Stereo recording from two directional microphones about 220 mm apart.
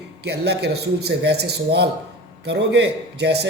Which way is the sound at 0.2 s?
50° right (ahead or behind).